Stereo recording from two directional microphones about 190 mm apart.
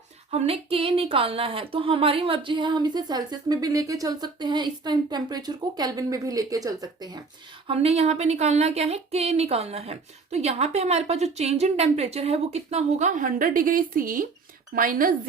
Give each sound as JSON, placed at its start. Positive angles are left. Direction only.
{"t": 0.3, "sound": "speech", "side_deg": -30}
{"t": 7.7, "sound": "speech", "side_deg": -30}